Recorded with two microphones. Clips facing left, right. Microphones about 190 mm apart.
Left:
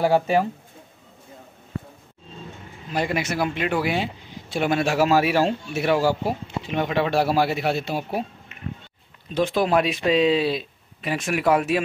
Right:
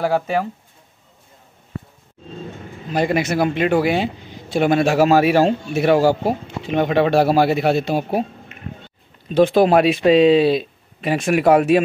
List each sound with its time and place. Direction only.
0.1 s speech: centre (ahead or behind)
2.9 s a man's voice: 45° right (ahead or behind)
9.4 s speech: 65° right (ahead or behind)